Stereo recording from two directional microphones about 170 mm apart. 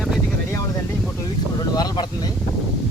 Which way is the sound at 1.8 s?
25° left (ahead or behind).